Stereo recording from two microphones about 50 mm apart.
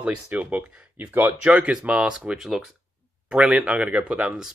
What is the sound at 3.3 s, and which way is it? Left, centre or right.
Speech, right.